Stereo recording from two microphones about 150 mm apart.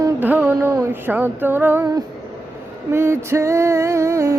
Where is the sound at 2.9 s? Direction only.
15° right (ahead or behind).